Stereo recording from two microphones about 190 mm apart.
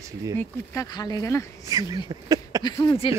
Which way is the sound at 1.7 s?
20° right (ahead or behind).